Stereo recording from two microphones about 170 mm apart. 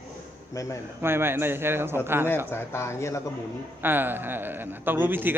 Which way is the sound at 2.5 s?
15° left (ahead or behind).